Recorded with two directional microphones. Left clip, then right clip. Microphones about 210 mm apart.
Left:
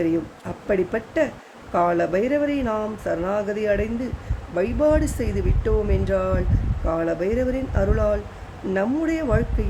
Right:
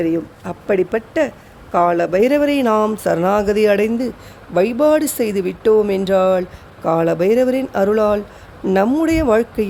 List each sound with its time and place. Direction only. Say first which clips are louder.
0.0 s speech: right 4 dB; 45° right (ahead or behind)